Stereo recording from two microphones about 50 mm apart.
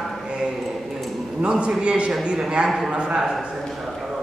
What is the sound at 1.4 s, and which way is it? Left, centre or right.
A woman's voice, right.